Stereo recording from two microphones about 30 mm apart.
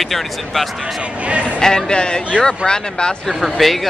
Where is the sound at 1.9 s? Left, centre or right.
Left.